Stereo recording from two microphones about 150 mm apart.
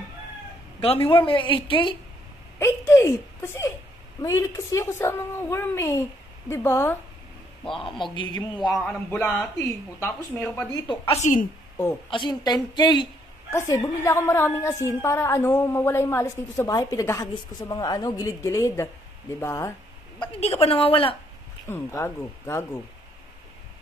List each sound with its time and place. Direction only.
0.7 s a woman's voice: 40° left (ahead or behind)
2.6 s a woman's voice: 20° left (ahead or behind)
7.8 s a woman's voice: 35° left (ahead or behind)
8.7 s a woman's voice: 5° left (ahead or behind)
11.1 s a woman's voice: 55° left (ahead or behind)
12.1 s a woman's voice: 30° left (ahead or behind)
13.5 s a woman's voice: 20° left (ahead or behind)
20.2 s a woman's voice: 40° left (ahead or behind)
21.6 s a woman's voice: 15° left (ahead or behind)